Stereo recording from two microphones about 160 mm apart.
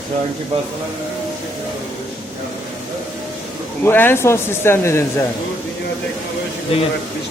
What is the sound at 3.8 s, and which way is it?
Speech, 10° left (ahead or behind).